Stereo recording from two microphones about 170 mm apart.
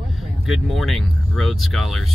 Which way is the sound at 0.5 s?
Centre (ahead or behind).